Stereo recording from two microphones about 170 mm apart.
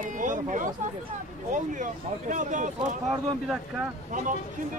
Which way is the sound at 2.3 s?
45° right (ahead or behind).